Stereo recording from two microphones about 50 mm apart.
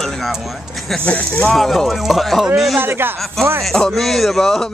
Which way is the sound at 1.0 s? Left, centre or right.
Left.